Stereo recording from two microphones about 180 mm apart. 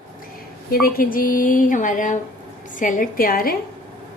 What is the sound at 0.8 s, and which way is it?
A woman's voice, 50° left (ahead or behind).